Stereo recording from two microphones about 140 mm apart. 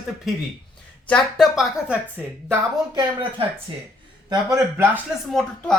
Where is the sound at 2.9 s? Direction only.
35° right (ahead or behind).